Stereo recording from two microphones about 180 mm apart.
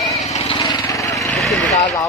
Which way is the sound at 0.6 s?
20° left (ahead or behind).